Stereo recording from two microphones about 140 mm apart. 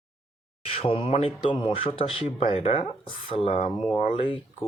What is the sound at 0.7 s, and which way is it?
Speech, 40° left (ahead or behind).